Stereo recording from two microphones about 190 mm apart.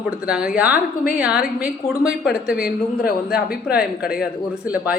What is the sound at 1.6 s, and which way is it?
Speech, 50° left (ahead or behind).